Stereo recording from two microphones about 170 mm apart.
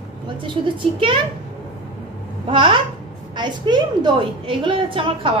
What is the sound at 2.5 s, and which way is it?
A woman's voice, 30° right (ahead or behind).